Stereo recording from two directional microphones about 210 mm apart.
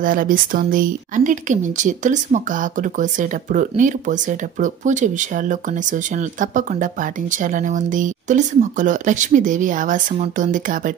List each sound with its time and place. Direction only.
0.0 s speech: 40° right (ahead or behind)